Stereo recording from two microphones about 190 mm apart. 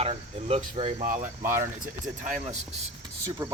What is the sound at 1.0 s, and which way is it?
Speech, 45° right (ahead or behind).